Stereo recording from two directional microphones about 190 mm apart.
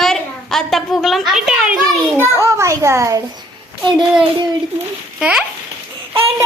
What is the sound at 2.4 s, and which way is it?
Speech, 15° right (ahead or behind).